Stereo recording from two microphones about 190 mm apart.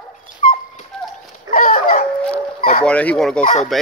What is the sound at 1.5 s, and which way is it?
Dog, 45° left (ahead or behind).